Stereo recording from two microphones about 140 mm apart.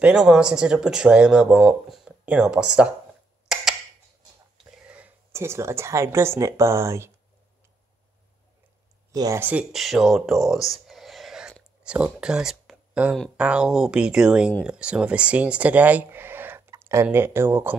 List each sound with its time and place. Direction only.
0.0 s speech: 5° right (ahead or behind)
3.5 s a sound: 5° right (ahead or behind)
4.6 s speech: 10° right (ahead or behind)
9.1 s speech: 25° right (ahead or behind)
9.4 s speech: 10° right (ahead or behind)